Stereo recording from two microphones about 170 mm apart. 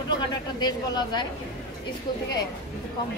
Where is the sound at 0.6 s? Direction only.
25° left (ahead or behind).